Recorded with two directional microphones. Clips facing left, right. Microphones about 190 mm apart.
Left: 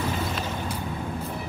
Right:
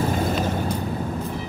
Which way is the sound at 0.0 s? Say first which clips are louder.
Right 6 dB; 45° right (ahead or behind).